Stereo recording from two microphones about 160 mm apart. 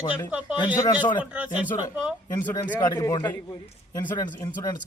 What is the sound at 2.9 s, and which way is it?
Speech, 25° left (ahead or behind).